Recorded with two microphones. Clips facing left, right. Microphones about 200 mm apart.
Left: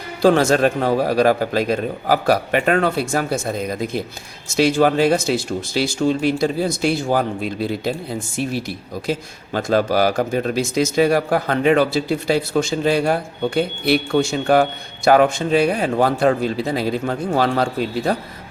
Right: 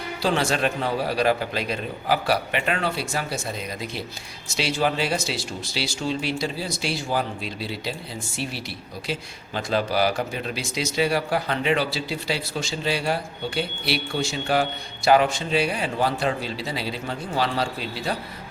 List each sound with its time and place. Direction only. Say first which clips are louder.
0.2 s a man's voice: left 9 dB; 50° left (ahead or behind)